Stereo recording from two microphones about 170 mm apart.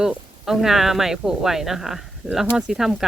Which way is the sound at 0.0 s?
5° right (ahead or behind).